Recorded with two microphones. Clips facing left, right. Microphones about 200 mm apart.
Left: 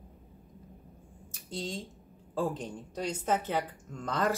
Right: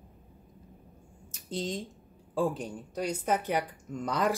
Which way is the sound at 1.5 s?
20° right (ahead or behind).